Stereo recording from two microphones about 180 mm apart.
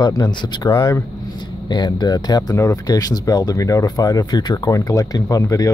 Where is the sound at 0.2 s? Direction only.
25° left (ahead or behind).